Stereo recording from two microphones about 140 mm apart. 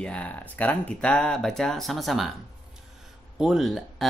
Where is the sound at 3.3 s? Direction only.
5° right (ahead or behind).